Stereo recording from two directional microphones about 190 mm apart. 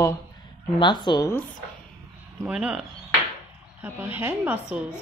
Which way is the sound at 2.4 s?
5° right (ahead or behind).